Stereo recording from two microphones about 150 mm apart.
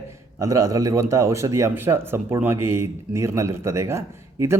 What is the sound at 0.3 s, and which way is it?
Speech, 20° right (ahead or behind).